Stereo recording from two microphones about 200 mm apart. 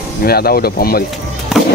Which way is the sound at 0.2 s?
50° left (ahead or behind).